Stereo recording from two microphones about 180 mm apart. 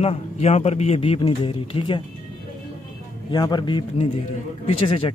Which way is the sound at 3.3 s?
25° left (ahead or behind).